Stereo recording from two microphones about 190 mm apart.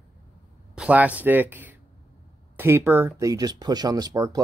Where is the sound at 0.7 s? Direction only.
5° right (ahead or behind).